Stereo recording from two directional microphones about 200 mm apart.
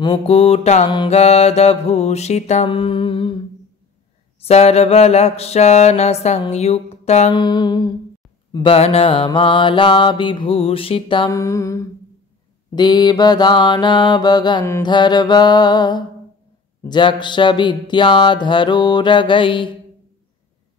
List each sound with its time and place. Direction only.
0.0 s mantra: 25° left (ahead or behind)
4.4 s mantra: 30° left (ahead or behind)